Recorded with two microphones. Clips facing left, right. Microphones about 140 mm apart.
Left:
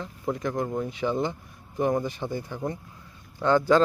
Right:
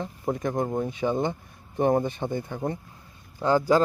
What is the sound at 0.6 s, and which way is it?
Speech, 35° right (ahead or behind).